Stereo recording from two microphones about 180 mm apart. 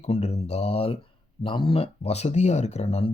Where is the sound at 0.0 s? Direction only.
40° left (ahead or behind).